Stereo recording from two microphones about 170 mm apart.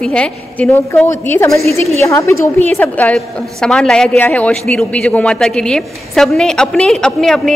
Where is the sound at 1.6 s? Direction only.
35° right (ahead or behind).